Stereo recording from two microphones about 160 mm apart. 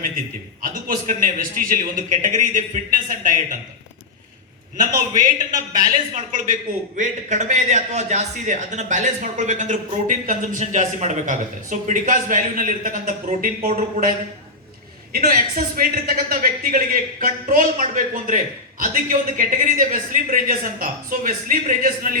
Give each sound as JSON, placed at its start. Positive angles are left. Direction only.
{"t": 0.6, "sound": "a man's voice", "side_deg": -60}
{"t": 6.1, "sound": "a man's voice", "side_deg": -55}
{"t": 15.1, "sound": "a man's voice", "side_deg": -65}